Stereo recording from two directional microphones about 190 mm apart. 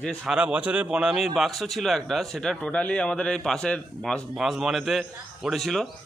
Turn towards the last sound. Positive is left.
turn(degrees=0)  # may be behind; listen again after turning